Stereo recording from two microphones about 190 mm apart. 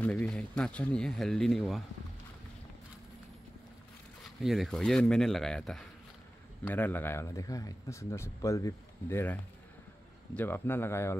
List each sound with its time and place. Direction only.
0.0 s speech: 10° left (ahead or behind)
4.4 s a man's voice: centre (ahead or behind)